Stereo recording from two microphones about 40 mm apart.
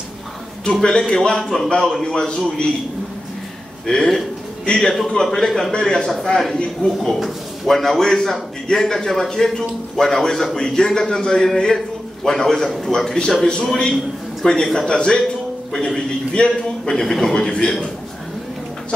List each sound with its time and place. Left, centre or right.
0.8 s a man's voice: left
2.1 s a man's voice: left
3.8 s a man's voice: centre
5.7 s a man's voice: centre
6.5 s a man's voice: left
7.0 s a man's voice: centre
12.6 s a man's voice: centre
12.9 s a man's voice: centre
16.3 s a man's voice: left
16.9 s a man's voice: centre
17.2 s a man's voice: centre